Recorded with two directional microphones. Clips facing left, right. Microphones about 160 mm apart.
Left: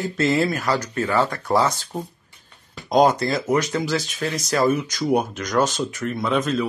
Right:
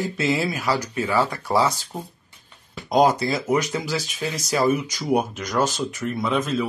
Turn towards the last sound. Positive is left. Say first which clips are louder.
# left 1 dB
turn(degrees=0)  # may be behind; listen again after turning